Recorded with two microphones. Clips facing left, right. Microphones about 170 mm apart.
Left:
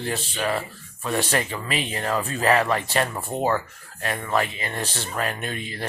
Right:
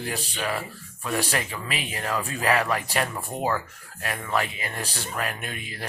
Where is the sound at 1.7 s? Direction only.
5° right (ahead or behind).